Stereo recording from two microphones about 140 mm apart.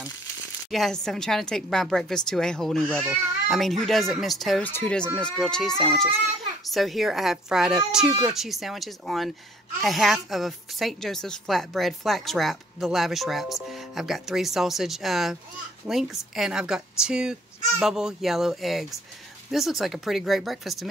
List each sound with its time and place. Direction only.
0.7 s a woman's voice: centre (ahead or behind)